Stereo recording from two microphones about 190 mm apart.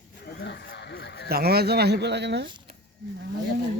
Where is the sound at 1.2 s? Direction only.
55° right (ahead or behind).